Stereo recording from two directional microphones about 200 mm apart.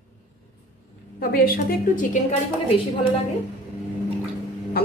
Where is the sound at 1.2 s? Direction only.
50° left (ahead or behind).